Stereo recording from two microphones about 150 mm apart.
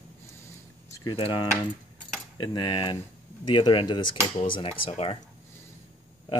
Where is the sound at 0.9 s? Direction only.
30° left (ahead or behind).